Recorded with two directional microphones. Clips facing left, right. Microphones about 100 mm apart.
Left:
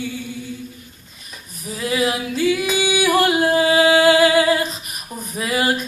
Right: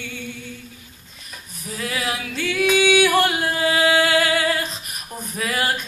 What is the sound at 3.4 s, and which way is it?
Music, 25° left (ahead or behind).